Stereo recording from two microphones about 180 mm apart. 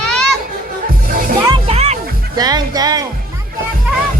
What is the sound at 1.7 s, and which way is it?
Music, 35° right (ahead or behind).